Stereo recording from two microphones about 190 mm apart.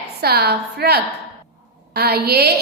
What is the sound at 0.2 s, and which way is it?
A woman's voice, 55° right (ahead or behind).